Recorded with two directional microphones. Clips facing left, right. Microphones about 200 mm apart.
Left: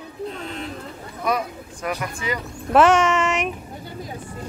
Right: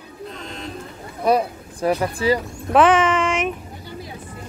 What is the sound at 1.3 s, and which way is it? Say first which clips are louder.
Speech: right 6 dB; 30° right (ahead or behind).